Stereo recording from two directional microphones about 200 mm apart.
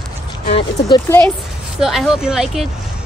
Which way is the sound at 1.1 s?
10° left (ahead or behind).